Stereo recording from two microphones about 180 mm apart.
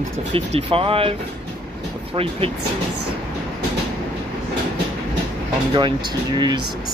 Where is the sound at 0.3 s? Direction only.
30° right (ahead or behind).